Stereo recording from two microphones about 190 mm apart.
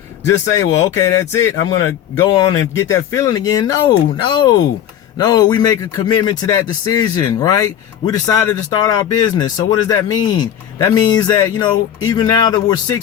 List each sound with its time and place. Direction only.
0.5 s speech: 15° left (ahead or behind)